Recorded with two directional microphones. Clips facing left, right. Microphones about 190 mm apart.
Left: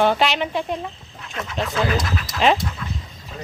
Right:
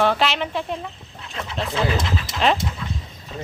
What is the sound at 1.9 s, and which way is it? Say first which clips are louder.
Speech: even; 25° right (ahead or behind).